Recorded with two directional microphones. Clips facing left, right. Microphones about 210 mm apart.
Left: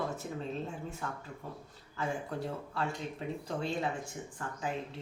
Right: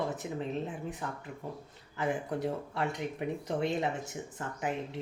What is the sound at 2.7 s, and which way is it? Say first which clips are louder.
Speech: right 3 dB; 20° right (ahead or behind).